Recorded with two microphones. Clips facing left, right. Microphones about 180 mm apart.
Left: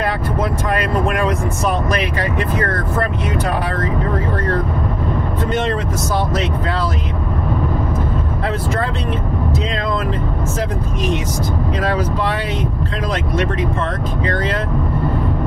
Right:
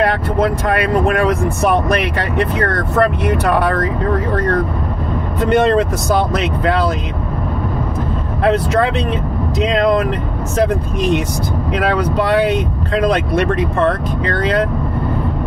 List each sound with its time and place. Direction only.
1.6 s speech: 60° right (ahead or behind)
5.5 s speech: 65° right (ahead or behind)
9.6 s speech: 75° right (ahead or behind)
11.8 s speech: 70° right (ahead or behind)